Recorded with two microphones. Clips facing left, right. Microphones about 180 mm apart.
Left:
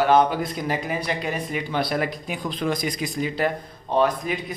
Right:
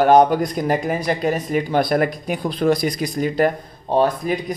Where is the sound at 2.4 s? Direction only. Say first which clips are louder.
Right 7 dB; 35° right (ahead or behind).